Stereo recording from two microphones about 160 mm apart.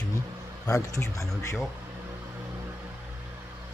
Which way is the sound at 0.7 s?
20° left (ahead or behind).